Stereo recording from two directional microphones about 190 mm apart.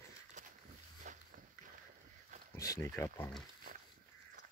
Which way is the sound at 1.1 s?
40° right (ahead or behind).